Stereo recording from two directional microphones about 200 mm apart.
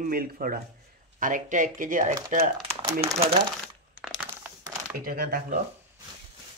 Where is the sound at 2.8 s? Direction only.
20° right (ahead or behind).